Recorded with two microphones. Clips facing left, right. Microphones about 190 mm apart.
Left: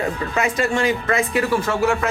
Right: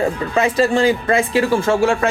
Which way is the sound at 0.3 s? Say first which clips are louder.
Right 5 dB; 30° right (ahead or behind).